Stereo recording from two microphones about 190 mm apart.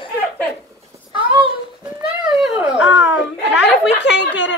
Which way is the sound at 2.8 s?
85° left.